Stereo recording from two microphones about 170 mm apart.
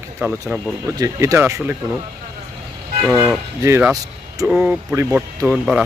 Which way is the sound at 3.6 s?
15° right (ahead or behind).